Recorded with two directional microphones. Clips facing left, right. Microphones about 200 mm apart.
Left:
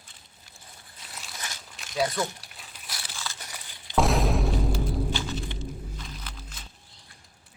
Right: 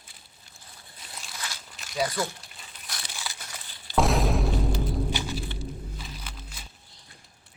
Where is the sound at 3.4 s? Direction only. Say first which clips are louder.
Even; 15° left (ahead or behind).